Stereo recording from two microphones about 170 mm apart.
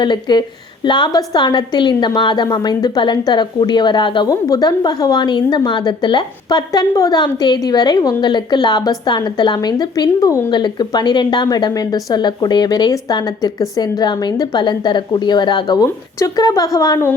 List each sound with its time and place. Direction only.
0.0 s a woman's voice: 25° left (ahead or behind)